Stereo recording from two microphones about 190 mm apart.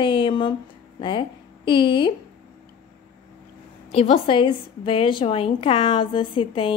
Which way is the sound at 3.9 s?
30° left (ahead or behind).